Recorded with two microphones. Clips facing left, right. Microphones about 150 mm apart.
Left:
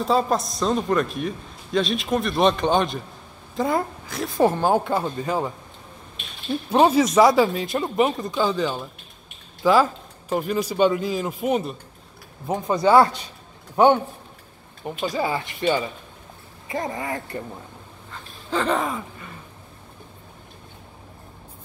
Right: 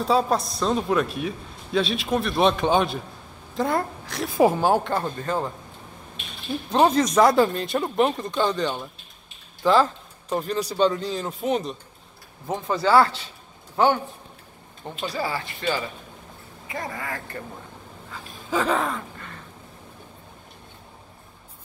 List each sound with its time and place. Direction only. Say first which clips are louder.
0.0 s a man's voice: even; centre (ahead or behind)
4.8 s speech: left 2 dB; 5° left (ahead or behind)
6.7 s a man's voice: left 2 dB; 5° left (ahead or behind)
18.1 s a sound: even; 5° right (ahead or behind)